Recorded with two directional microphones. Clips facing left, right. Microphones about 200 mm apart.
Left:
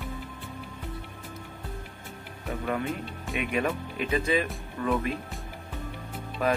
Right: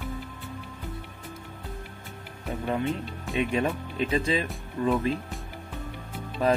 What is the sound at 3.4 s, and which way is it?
Speech, 30° right (ahead or behind).